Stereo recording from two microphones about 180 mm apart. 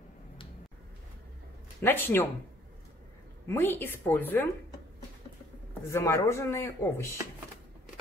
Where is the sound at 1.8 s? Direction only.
10° left (ahead or behind).